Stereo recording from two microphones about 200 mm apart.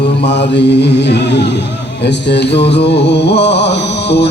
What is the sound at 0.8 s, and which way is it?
Music, 60° left (ahead or behind).